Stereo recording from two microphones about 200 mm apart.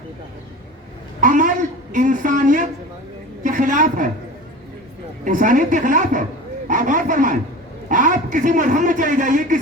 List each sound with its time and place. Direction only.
1.2 s a man's voice: 40° right (ahead or behind)
5.2 s a man's voice: 40° right (ahead or behind)